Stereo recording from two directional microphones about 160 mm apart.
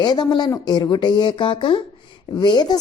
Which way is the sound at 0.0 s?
25° left (ahead or behind).